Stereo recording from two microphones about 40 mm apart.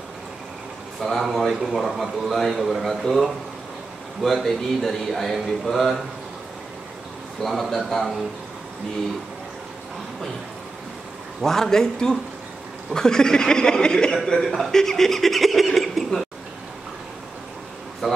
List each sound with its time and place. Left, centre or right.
1.0 s speech: centre
7.4 s speech: centre
11.4 s speech: centre
14.1 s speech: centre
18.0 s speech: centre